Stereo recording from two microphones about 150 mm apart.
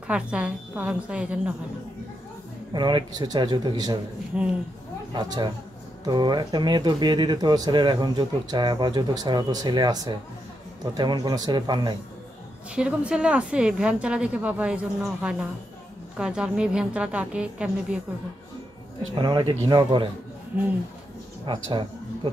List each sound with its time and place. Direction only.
0.1 s a woman's voice: 5° right (ahead or behind)
2.7 s speech: 30° right (ahead or behind)
4.3 s a woman's voice: 10° right (ahead or behind)
5.1 s speech: 30° right (ahead or behind)
12.7 s a woman's voice: 5° right (ahead or behind)
19.1 s speech: 30° right (ahead or behind)
21.5 s speech: 35° right (ahead or behind)